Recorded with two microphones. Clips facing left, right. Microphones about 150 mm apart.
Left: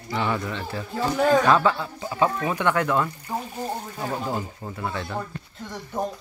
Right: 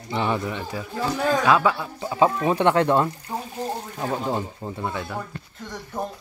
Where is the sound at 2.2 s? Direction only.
25° right (ahead or behind).